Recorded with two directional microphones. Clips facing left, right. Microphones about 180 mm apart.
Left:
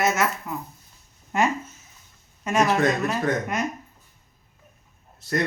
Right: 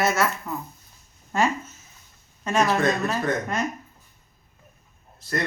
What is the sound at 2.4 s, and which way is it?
Speech, 10° left (ahead or behind).